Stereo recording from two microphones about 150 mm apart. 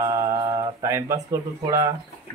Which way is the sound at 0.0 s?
25° right (ahead or behind).